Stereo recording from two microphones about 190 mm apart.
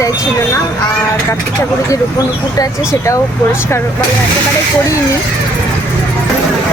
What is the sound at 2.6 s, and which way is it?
Speech, 15° left (ahead or behind).